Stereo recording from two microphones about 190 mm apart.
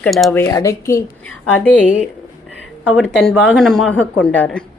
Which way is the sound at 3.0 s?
5° left (ahead or behind).